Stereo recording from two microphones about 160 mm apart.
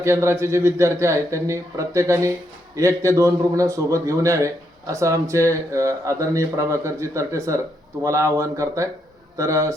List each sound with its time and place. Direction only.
0.0 s a man's voice: 15° right (ahead or behind)